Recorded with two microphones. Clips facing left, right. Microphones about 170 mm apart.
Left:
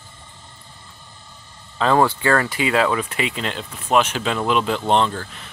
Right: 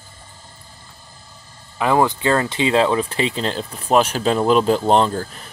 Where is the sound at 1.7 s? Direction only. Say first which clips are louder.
Even; 15° right (ahead or behind).